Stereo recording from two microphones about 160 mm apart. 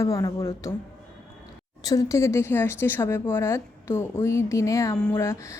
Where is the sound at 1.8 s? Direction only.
20° left (ahead or behind).